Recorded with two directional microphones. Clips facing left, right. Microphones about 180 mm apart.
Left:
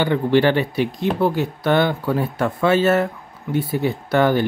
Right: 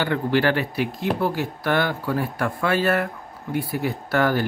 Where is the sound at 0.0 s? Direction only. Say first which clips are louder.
Left 4 dB; 20° left (ahead or behind).